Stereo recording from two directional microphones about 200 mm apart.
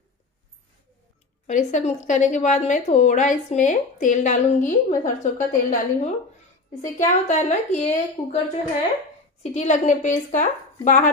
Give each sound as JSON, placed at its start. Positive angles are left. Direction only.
{"t": 1.5, "sound": "a woman's voice", "side_deg": 35}
{"t": 9.4, "sound": "a woman's voice", "side_deg": 35}